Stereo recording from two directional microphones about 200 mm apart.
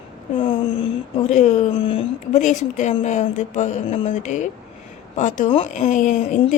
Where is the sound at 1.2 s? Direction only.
35° left (ahead or behind).